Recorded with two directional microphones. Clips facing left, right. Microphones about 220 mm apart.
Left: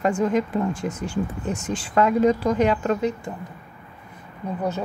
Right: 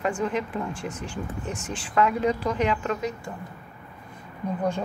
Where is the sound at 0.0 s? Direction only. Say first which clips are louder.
Left 5 dB; 40° left (ahead or behind).